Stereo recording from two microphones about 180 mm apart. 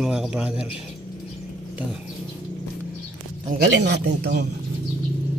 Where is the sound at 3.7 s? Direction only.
75° right (ahead or behind).